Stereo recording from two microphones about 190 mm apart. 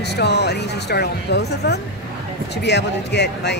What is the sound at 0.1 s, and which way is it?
Speech, 60° left (ahead or behind).